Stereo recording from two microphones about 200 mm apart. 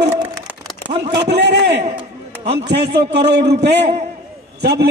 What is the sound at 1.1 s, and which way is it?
A man's voice, 60° right (ahead or behind).